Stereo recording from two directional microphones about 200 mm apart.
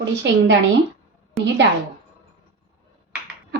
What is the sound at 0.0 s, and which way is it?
Speech, 60° right (ahead or behind).